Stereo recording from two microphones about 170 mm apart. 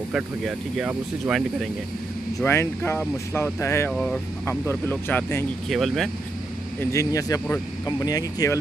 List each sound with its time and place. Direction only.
0.1 s speech: centre (ahead or behind)
2.4 s speech: 15° left (ahead or behind)
3.9 s speech: centre (ahead or behind)
4.5 s speech: 15° left (ahead or behind)
5.7 s speech: centre (ahead or behind)
6.8 s speech: 15° left (ahead or behind)